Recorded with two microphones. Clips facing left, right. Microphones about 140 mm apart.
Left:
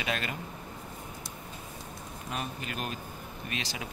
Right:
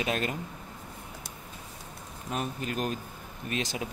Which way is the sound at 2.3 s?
40° right (ahead or behind).